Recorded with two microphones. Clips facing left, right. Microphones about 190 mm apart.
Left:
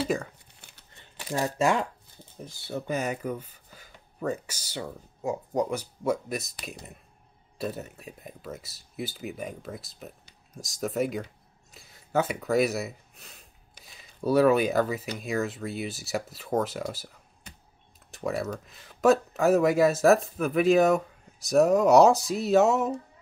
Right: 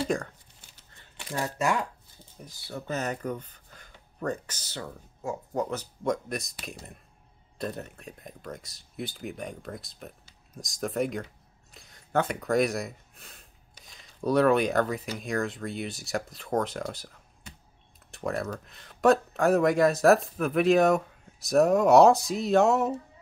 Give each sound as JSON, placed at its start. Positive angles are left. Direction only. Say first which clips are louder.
{"t": 0.0, "sound": "speech", "louder": "even", "side_deg": 5}
{"t": 0.6, "sound": "crumpling", "louder": "left 4 dB", "side_deg": 60}
{"t": 1.3, "sound": "speech", "louder": "left 3 dB", "side_deg": 25}
{"t": 2.9, "sound": "speech", "louder": "left 1 dB", "side_deg": 10}
{"t": 18.1, "sound": "speech", "louder": "left 1 dB", "side_deg": 0}